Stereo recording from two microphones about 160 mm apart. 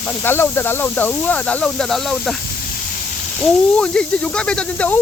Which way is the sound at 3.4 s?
5° left (ahead or behind).